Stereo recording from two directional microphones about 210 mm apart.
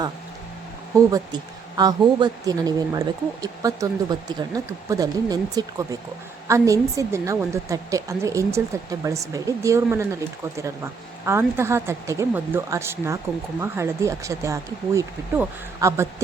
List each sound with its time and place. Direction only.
0.9 s a woman's voice: 20° right (ahead or behind)
11.3 s a woman's voice: 10° right (ahead or behind)